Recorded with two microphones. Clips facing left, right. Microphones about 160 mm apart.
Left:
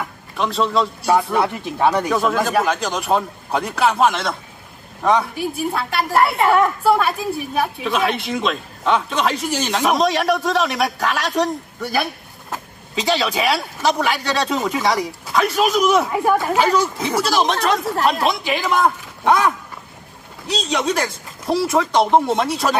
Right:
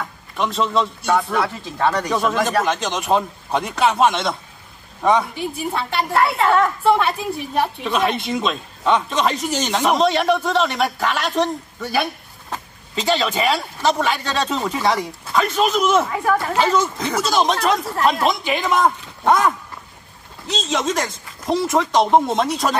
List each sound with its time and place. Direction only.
0.0 s a man's voice: centre (ahead or behind)
1.3 s speech: 20° left (ahead or behind)
2.0 s a woman's voice: centre (ahead or behind)
20.5 s a woman's voice: centre (ahead or behind)